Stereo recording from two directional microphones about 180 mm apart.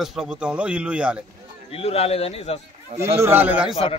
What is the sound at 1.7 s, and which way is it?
Speech, 35° left (ahead or behind).